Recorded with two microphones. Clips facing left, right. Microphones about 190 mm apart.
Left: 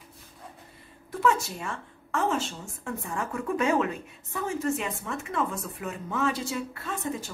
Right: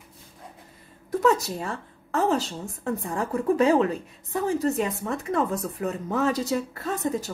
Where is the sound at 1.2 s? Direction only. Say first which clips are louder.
Right 3 dB; 35° right (ahead or behind).